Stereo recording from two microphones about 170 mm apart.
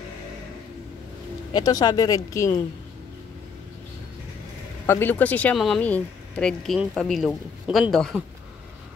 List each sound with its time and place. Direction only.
1.5 s speech: 25° left (ahead or behind)
4.8 s speech: 10° left (ahead or behind)